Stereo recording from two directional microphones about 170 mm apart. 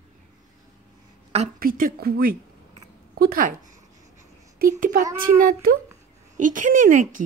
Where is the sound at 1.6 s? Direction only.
55° right (ahead or behind).